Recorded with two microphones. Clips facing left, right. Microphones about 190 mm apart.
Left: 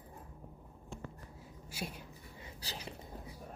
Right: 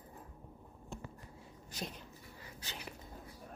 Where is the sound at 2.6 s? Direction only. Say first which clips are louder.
Left 3 dB; 35° left (ahead or behind).